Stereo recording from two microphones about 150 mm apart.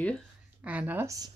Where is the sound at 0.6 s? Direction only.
10° right (ahead or behind).